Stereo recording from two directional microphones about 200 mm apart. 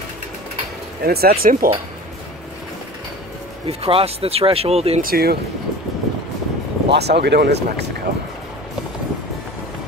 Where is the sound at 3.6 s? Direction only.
30° right (ahead or behind).